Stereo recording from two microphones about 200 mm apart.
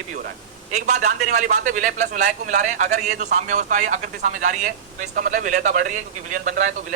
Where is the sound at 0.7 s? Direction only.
35° right (ahead or behind).